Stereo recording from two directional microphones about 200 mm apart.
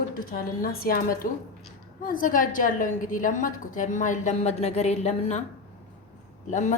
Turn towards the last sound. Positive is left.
turn(degrees=40)  # may be behind; listen again after turning